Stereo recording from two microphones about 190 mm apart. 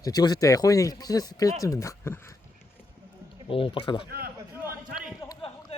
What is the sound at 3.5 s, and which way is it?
Speech, 30° left (ahead or behind).